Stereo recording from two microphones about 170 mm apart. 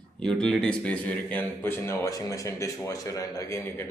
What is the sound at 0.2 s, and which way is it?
Speech, 5° left (ahead or behind).